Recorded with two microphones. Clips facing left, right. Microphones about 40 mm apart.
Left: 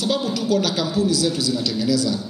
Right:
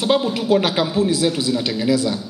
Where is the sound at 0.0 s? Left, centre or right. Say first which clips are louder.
Right 4 dB; right.